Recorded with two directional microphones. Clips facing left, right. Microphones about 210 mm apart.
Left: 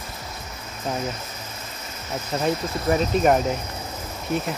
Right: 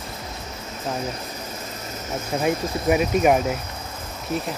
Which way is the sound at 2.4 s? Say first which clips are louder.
Right 1 dB; 10° right (ahead or behind).